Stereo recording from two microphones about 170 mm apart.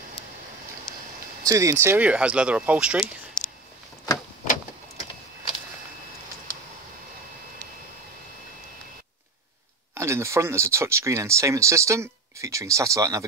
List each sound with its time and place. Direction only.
1.4 s speech: 20° right (ahead or behind)
9.9 s speech: 15° right (ahead or behind)